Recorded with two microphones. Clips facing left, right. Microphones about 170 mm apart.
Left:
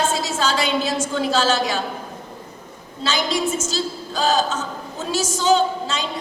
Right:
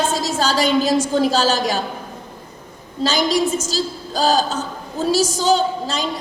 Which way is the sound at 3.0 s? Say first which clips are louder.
Right 4 dB; 40° right (ahead or behind).